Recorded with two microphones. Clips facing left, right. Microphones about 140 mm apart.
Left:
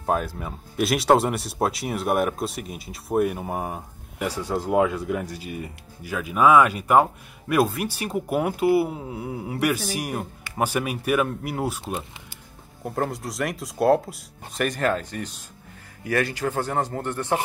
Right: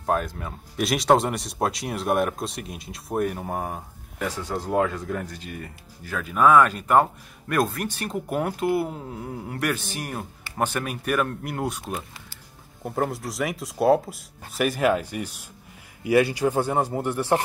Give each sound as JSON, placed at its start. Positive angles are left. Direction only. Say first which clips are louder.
{"t": 0.0, "sound": "speech", "louder": "even", "side_deg": 5}
{"t": 12.8, "sound": "a man's voice", "louder": "even", "side_deg": 0}